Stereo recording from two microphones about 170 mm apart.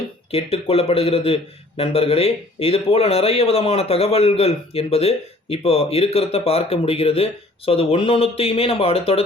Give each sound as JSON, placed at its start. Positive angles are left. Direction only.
{"t": 0.3, "sound": "a man's voice", "side_deg": 35}